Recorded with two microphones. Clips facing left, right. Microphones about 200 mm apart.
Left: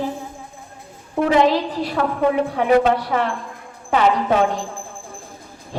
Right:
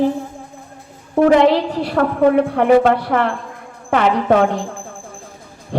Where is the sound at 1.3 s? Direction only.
60° right (ahead or behind).